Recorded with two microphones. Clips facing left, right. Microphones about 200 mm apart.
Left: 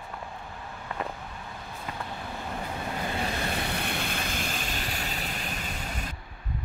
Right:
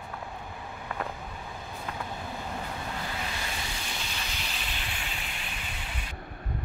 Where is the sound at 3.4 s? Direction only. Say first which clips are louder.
Left 7 dB; 60° left (ahead or behind); by 6.2 s 40° left (ahead or behind).